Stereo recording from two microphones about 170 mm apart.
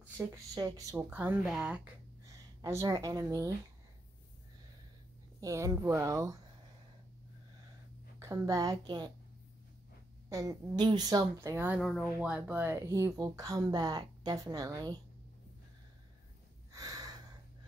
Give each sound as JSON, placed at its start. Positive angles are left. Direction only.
{"t": 0.0, "sound": "speech", "side_deg": -20}
{"t": 0.9, "sound": "speech", "side_deg": -10}
{"t": 2.6, "sound": "speech", "side_deg": -15}
{"t": 5.4, "sound": "a woman's voice", "side_deg": -20}
{"t": 8.2, "sound": "speech", "side_deg": -20}
{"t": 10.3, "sound": "speech", "side_deg": -20}
{"t": 16.7, "sound": "a sound", "side_deg": -20}